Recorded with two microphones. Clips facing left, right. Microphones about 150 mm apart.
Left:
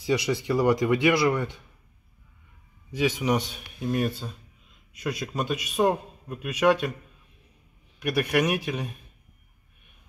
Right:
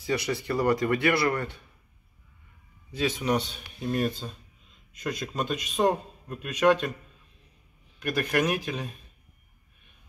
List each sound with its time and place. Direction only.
0.3 s a man's voice: 15° left (ahead or behind)
3.0 s a man's voice: 10° left (ahead or behind)
8.0 s a man's voice: 10° left (ahead or behind)